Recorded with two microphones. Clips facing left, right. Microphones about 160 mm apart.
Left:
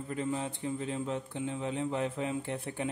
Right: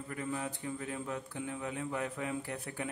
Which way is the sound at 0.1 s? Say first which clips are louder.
Left 4 dB; 25° left (ahead or behind).